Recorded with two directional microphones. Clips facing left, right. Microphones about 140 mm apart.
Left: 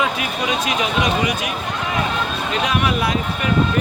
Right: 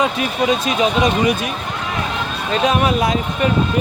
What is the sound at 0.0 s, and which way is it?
Speech, 35° right (ahead or behind).